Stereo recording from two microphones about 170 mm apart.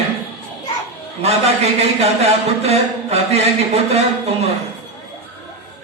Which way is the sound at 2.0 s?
40° right (ahead or behind).